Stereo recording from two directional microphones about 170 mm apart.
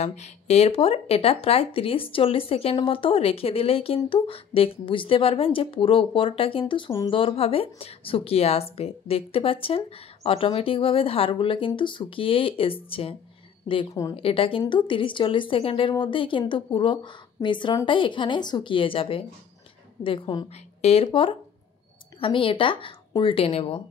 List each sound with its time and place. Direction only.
0.0 s speech: 40° left (ahead or behind)
14.1 s a woman's voice: 30° left (ahead or behind)